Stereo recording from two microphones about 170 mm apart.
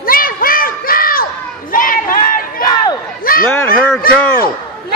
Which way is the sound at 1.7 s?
55° left (ahead or behind).